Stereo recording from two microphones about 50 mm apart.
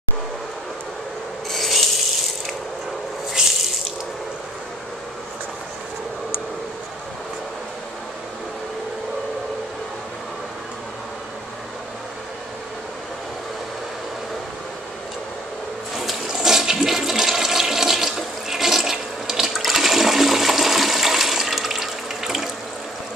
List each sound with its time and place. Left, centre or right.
1.5 s rub: centre
3.3 s water: centre
16.0 s toilet flush: centre